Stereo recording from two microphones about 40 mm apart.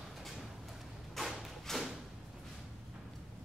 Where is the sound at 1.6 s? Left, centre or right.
Centre.